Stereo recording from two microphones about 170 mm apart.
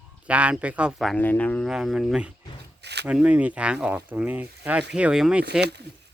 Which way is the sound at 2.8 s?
80° right.